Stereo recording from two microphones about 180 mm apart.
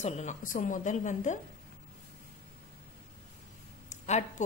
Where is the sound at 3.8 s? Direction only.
40° left (ahead or behind).